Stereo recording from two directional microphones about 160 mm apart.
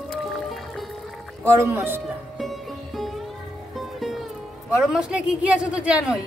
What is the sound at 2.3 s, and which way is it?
Music, centre (ahead or behind).